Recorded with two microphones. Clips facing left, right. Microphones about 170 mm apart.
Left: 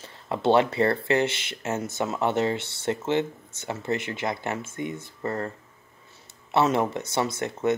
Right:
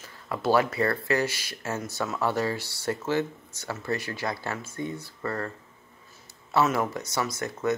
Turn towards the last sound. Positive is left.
turn(degrees=25)  # may be behind; listen again after turning